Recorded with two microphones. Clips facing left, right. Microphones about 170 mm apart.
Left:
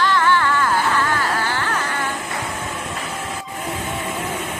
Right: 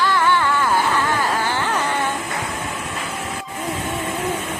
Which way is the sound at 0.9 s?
15° right (ahead or behind).